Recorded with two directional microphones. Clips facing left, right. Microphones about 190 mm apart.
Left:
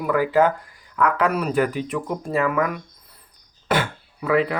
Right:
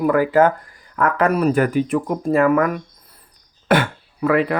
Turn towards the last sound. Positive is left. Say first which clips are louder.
# right 3 dB
turn(degrees=-55)  # may be behind; listen again after turning